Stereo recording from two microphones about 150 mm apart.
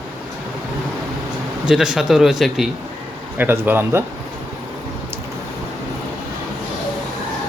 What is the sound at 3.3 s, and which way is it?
Speech, 15° right (ahead or behind).